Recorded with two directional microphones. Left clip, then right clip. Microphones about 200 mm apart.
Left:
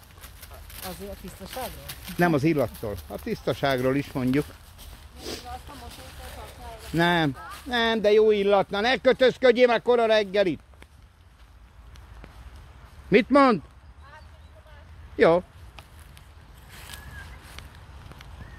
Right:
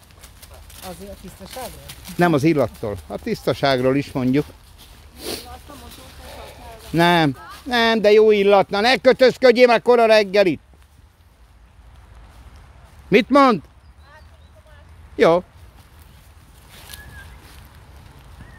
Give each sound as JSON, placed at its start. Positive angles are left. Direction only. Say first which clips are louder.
{"t": 1.4, "sound": "speech", "louder": "right 2 dB", "side_deg": -15}
{"t": 5.2, "sound": "a sound", "louder": "right 6 dB", "side_deg": -35}
{"t": 7.0, "sound": "speech", "louder": "right 7 dB", "side_deg": -40}
{"t": 13.1, "sound": "speech", "louder": "right 5 dB", "side_deg": -15}
{"t": 15.1, "sound": "speech", "louder": "right 4 dB", "side_deg": -15}